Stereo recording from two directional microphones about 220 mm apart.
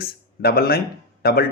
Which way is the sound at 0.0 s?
45° left (ahead or behind).